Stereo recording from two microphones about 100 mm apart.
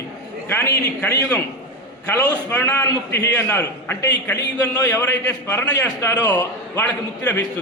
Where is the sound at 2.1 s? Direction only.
40° left (ahead or behind).